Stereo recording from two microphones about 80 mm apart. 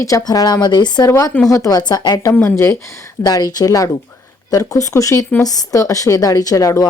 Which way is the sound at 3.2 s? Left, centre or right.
Left.